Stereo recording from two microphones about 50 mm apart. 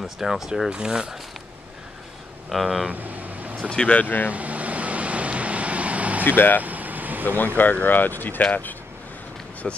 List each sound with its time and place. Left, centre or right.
0.0 s speech: centre
0.7 s speech: centre
2.5 s speech: centre
2.9 s vehicle: right
3.7 s speech: left
4.0 s speech: left
4.3 s vehicle: right
6.2 s speech: left
6.6 s vehicle: right
7.2 s speech: left
9.6 s speech: centre